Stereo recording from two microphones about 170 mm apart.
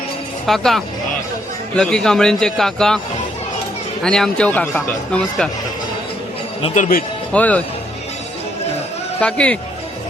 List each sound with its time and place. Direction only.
0.4 s speech: centre (ahead or behind)
4.0 s speech: 5° left (ahead or behind)
6.7 s speech: 45° left (ahead or behind)
7.3 s speech: 10° left (ahead or behind)
9.2 s speech: 5° left (ahead or behind)